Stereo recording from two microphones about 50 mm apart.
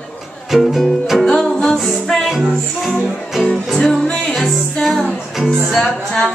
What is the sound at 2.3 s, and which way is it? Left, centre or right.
Music, centre.